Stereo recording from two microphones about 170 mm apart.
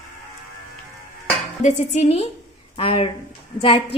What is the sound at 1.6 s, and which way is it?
A woman's voice, 40° left (ahead or behind).